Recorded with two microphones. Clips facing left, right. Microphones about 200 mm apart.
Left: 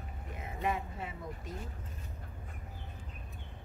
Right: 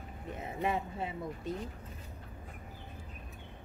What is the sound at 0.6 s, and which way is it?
Speech, 30° right (ahead or behind).